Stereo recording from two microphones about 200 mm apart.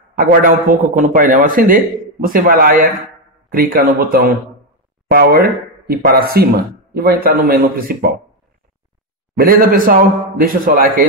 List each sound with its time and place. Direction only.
0.2 s speech: 45° right (ahead or behind)
9.4 s speech: 45° right (ahead or behind)